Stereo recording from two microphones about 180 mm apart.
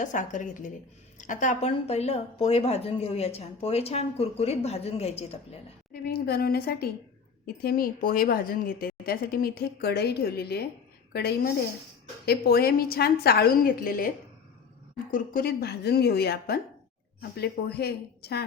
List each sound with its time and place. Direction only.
0.0 s a woman's voice: 45° left (ahead or behind)
5.9 s a woman's voice: 55° left (ahead or behind)
15.1 s a woman's voice: 50° left (ahead or behind)